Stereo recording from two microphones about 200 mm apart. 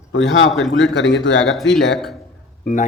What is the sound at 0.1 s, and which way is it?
Speech, 75° left (ahead or behind).